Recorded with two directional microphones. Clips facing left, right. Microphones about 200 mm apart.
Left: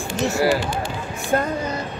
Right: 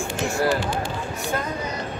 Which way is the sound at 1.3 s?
50° left (ahead or behind).